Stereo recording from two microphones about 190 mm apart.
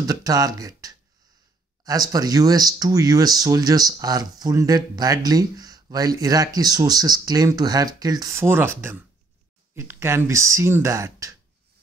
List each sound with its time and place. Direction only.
0.0 s speech: 20° right (ahead or behind)